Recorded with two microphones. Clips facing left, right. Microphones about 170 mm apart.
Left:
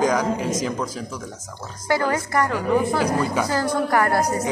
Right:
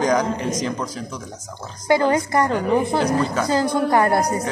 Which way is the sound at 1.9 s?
20° right (ahead or behind).